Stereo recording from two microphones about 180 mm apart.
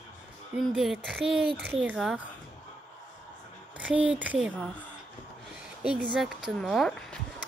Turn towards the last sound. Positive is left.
turn(degrees=0)  # may be behind; listen again after turning